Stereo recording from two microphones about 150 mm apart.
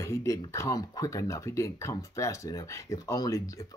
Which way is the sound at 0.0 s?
20° left (ahead or behind).